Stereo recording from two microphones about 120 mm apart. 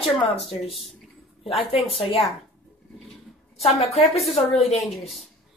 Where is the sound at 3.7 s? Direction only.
60° left (ahead or behind).